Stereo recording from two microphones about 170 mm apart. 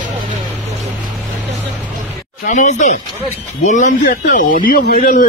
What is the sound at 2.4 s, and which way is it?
Speech, 45° left (ahead or behind).